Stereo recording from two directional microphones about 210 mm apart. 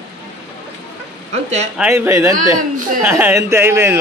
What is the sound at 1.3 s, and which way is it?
Speech, 30° right (ahead or behind).